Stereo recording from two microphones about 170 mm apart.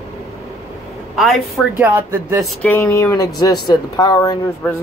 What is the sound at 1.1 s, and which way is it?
A woman's voice, centre (ahead or behind).